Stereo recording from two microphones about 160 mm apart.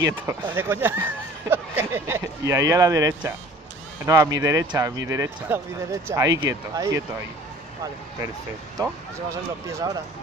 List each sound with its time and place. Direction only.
0.0 s speech: 20° right (ahead or behind)
8.7 s speech: 20° right (ahead or behind)